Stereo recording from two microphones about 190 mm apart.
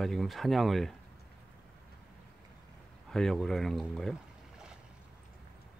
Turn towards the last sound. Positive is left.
turn(degrees=0)  # may be behind; listen again after turning